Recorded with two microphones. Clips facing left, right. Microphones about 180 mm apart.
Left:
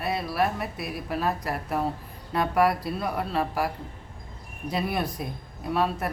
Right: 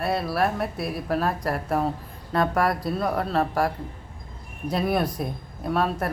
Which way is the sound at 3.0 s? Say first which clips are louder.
Right 4 dB; 45° right (ahead or behind).